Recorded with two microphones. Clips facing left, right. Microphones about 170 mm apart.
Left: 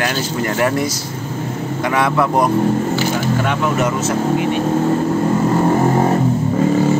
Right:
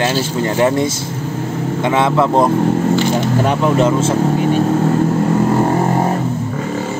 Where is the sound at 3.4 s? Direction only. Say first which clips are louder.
Right 4 dB; 35° right (ahead or behind).